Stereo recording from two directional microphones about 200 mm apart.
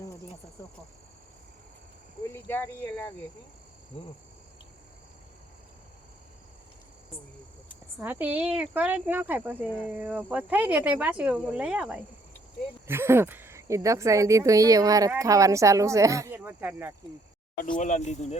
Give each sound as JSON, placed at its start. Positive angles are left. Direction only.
{"t": 2.3, "sound": "speech", "side_deg": 10}
{"t": 7.9, "sound": "speech", "side_deg": -10}
{"t": 17.6, "sound": "speech", "side_deg": 40}